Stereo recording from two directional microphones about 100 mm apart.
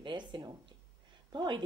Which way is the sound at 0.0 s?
50° right (ahead or behind).